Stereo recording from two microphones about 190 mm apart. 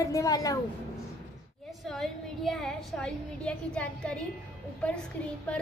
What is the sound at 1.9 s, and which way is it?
A woman's voice, centre (ahead or behind).